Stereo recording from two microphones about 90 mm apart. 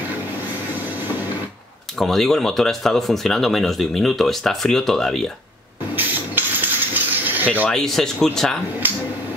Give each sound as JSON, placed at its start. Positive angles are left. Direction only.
{"t": 2.0, "sound": "speech", "side_deg": 5}
{"t": 5.9, "sound": "coin", "side_deg": -20}
{"t": 7.6, "sound": "speech", "side_deg": 5}